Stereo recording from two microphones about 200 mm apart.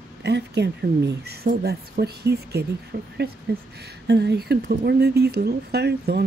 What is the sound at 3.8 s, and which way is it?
Speech, 60° right (ahead or behind).